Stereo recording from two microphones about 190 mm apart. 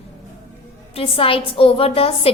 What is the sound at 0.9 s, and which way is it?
A woman's voice, 30° left (ahead or behind).